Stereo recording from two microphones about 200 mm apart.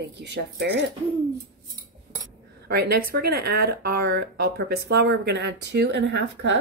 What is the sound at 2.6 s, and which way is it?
Speech, 50° right (ahead or behind).